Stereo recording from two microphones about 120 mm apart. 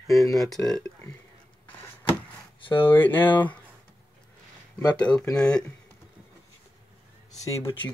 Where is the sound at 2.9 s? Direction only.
15° left (ahead or behind).